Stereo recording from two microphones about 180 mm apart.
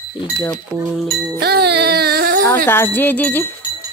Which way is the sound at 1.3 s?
65° right (ahead or behind).